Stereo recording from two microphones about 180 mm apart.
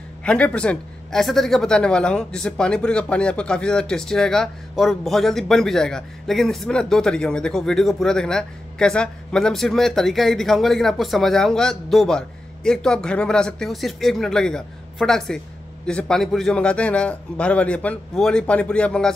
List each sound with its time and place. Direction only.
0.2 s a man's voice: 5° left (ahead or behind)